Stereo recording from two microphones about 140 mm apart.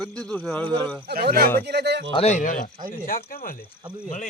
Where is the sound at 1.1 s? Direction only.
90° right.